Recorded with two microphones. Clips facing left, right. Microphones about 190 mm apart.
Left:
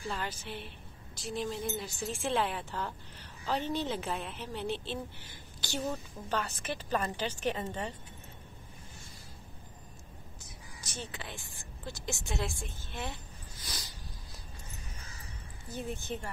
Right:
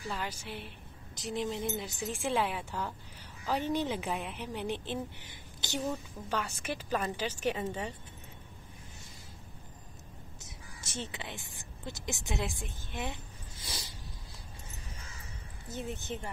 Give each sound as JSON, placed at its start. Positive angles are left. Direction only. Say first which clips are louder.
{"t": 0.1, "sound": "a woman's voice", "louder": "right 2 dB", "side_deg": -10}
{"t": 2.0, "sound": "a woman's voice", "louder": "even", "side_deg": -10}
{"t": 10.4, "sound": "speech", "louder": "even", "side_deg": -25}
{"t": 13.6, "sound": "a sound", "louder": "right 2 dB", "side_deg": -25}
{"t": 15.7, "sound": "speech", "louder": "left 1 dB", "side_deg": -20}